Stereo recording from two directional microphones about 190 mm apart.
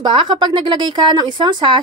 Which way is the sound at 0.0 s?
25° right (ahead or behind).